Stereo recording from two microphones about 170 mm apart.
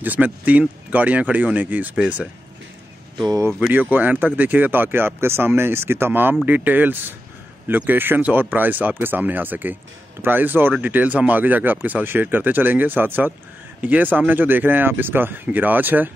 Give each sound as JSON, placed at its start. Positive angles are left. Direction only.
{"t": 0.0, "sound": "speech", "side_deg": -10}
{"t": 3.2, "sound": "speech", "side_deg": -20}
{"t": 3.5, "sound": "speech", "side_deg": -10}